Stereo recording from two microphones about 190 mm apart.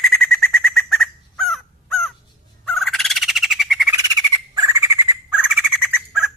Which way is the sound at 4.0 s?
20° right (ahead or behind).